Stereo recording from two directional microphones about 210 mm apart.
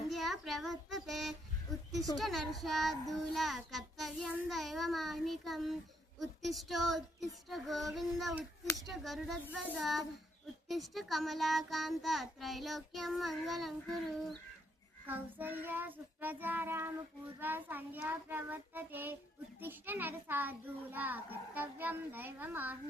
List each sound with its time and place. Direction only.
0.1 s child singing: centre (ahead or behind)
2.1 s a child's voice: centre (ahead or behind)
15.0 s a child's voice: 10° right (ahead or behind)